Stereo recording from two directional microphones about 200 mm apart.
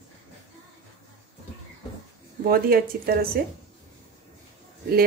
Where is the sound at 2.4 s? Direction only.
50° right (ahead or behind).